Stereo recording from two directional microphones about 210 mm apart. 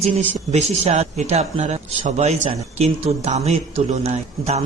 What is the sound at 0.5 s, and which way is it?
Speech, 30° right (ahead or behind).